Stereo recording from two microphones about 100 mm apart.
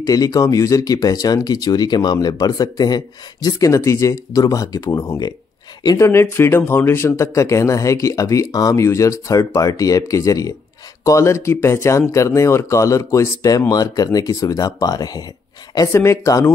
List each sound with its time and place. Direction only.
0.0 s speech: 40° left (ahead or behind)